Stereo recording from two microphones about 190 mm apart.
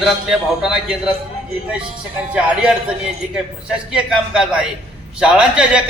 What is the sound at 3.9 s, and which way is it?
A man's voice, 5° right (ahead or behind).